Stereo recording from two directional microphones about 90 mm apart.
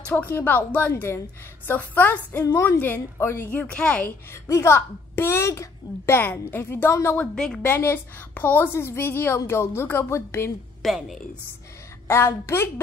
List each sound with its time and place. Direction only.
0.0 s a child's voice: 15° left (ahead or behind)
2.4 s a woman's voice: 30° left (ahead or behind)
2.8 s a child's voice: 20° left (ahead or behind)
3.5 s a woman's voice: 10° left (ahead or behind)
4.3 s a child's voice: 30° left (ahead or behind)
7.2 s a woman's voice: 5° left (ahead or behind)
7.6 s a child's voice: 25° left (ahead or behind)
10.8 s a woman's voice: centre (ahead or behind)
12.1 s a child's voice: 30° left (ahead or behind)